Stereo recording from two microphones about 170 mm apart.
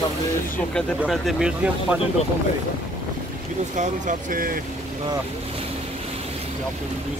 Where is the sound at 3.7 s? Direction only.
45° right (ahead or behind).